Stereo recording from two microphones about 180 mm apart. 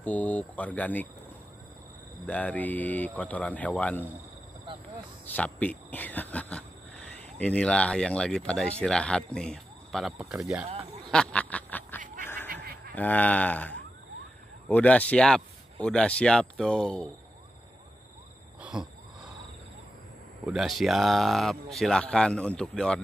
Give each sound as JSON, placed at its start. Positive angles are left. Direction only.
{"t": 0.0, "sound": "speech", "side_deg": 10}
{"t": 2.2, "sound": "speech", "side_deg": 10}
{"t": 5.2, "sound": "speech", "side_deg": 10}
{"t": 11.1, "sound": "duck", "side_deg": 5}
{"t": 12.4, "sound": "goose", "side_deg": -55}
{"t": 12.9, "sound": "speech", "side_deg": 10}
{"t": 18.6, "sound": "wheeze", "side_deg": -5}
{"t": 20.4, "sound": "speech", "side_deg": 0}